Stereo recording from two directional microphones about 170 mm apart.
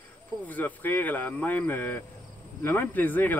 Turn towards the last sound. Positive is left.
turn(degrees=10)  # may be behind; listen again after turning